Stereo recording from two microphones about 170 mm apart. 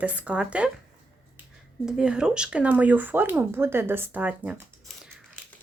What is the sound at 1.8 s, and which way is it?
Speech, 5° right (ahead or behind).